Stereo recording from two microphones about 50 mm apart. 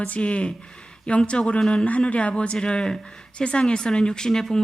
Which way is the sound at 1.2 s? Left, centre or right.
Left.